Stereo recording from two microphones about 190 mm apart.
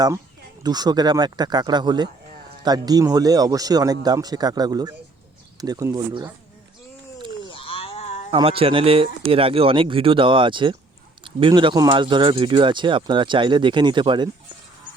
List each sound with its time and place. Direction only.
0.6 s speech: 20° right (ahead or behind)
7.4 s a sound: 30° left (ahead or behind)
8.3 s speech: 30° right (ahead or behind)